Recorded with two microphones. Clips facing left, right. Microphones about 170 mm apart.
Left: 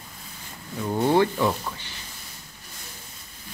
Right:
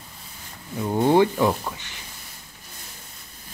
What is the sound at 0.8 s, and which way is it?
Speech, 15° right (ahead or behind).